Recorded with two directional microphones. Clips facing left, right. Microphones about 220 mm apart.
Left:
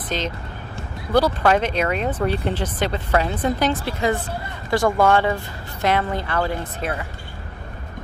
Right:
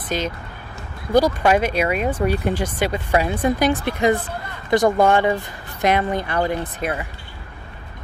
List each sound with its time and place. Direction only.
0.1 s speech: 10° right (ahead or behind)